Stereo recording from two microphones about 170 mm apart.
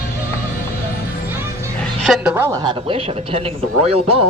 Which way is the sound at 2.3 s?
15° right (ahead or behind).